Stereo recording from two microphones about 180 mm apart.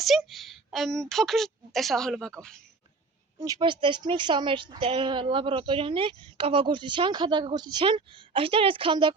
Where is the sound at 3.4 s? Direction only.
25° right (ahead or behind).